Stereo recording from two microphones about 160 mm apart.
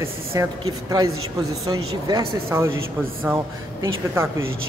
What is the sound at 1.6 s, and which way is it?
A woman's voice, 20° right (ahead or behind).